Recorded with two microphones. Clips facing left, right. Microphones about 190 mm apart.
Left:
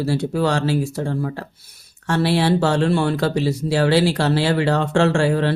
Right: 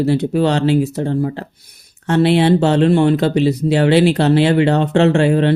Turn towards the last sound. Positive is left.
turn(degrees=-20)  # may be behind; listen again after turning